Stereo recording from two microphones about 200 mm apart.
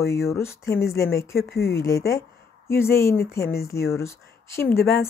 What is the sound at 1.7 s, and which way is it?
Speech, 15° left (ahead or behind).